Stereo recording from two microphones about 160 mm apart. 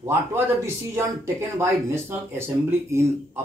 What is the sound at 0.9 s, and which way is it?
Speech, 15° right (ahead or behind).